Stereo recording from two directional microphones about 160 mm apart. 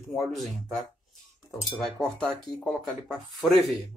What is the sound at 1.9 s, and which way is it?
Speech, 5° left (ahead or behind).